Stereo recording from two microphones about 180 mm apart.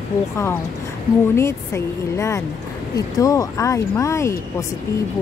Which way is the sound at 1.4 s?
15° left (ahead or behind).